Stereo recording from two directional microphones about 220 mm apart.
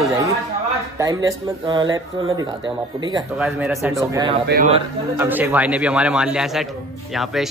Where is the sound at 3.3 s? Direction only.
Centre (ahead or behind).